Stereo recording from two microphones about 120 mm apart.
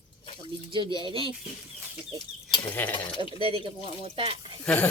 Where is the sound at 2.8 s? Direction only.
15° left (ahead or behind).